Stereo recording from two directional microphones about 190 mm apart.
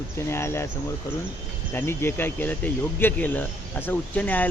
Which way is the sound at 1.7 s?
10° left (ahead or behind).